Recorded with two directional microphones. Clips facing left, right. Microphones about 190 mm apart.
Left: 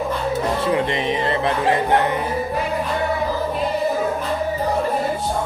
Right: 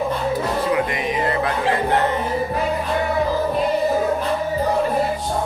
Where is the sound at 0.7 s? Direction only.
25° left (ahead or behind).